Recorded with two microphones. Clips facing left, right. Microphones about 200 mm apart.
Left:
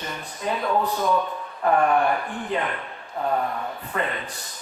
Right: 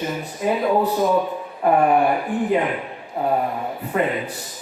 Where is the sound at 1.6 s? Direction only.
15° right (ahead or behind).